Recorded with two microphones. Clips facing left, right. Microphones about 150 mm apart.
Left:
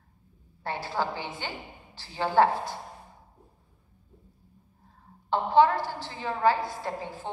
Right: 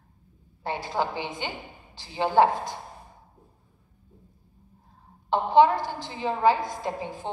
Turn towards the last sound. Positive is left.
turn(degrees=-15)  # may be behind; listen again after turning